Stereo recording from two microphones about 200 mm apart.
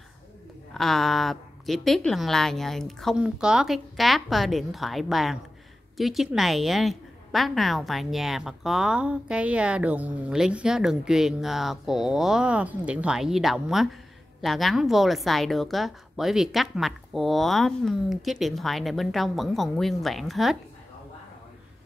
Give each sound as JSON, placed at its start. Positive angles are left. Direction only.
{"t": 0.7, "sound": "a woman's voice", "side_deg": 0}